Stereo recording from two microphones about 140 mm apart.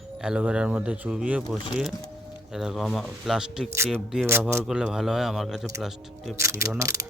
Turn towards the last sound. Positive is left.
turn(degrees=-20)  # may be behind; listen again after turning